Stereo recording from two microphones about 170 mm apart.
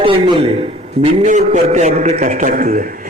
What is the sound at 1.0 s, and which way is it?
A man's voice, 45° right (ahead or behind).